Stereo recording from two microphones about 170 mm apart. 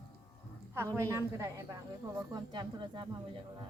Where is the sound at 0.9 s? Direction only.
15° right (ahead or behind).